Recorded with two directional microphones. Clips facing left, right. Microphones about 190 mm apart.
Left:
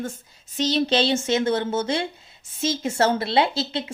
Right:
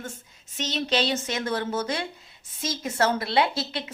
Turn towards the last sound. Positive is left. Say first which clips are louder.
# left 3 dB
turn(degrees=25)  # may be behind; listen again after turning